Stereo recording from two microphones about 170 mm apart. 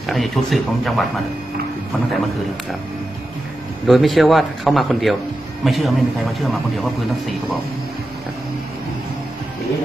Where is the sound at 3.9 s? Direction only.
Centre (ahead or behind).